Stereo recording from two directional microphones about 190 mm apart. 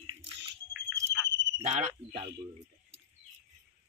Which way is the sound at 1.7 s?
25° right (ahead or behind).